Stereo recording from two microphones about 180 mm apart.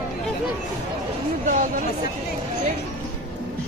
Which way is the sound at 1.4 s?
45° right (ahead or behind).